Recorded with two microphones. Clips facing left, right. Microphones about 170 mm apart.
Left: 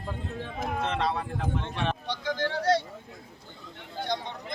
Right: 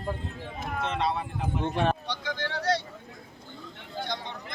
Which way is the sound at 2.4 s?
45° left (ahead or behind).